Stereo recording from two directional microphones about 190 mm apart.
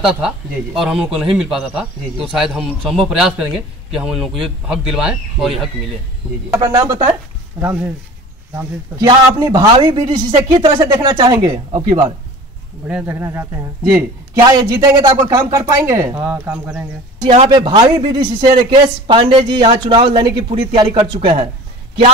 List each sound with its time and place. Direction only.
0.0 s speech: 5° right (ahead or behind)
6.5 s a man's voice: 15° right (ahead or behind)
9.0 s a man's voice: 20° right (ahead or behind)
12.8 s speech: 10° right (ahead or behind)
17.2 s a man's voice: 30° right (ahead or behind)